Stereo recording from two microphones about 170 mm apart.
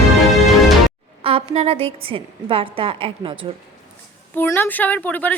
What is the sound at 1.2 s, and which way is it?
A woman's voice, 35° right (ahead or behind).